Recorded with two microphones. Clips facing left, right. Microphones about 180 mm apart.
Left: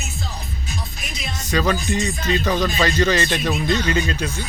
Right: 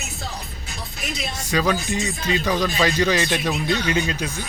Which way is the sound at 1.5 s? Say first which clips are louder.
Left 1 dB; 10° right (ahead or behind).